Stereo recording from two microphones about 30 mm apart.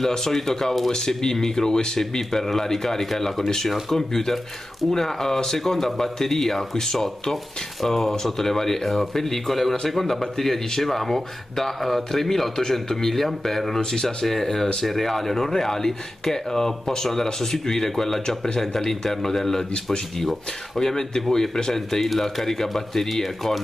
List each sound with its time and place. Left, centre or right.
0.0 s speech: centre
20.8 s speech: centre